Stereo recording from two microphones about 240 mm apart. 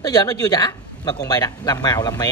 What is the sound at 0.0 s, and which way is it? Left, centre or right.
Speech, centre.